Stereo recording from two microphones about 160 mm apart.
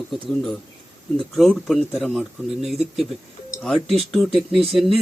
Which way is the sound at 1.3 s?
Centre (ahead or behind).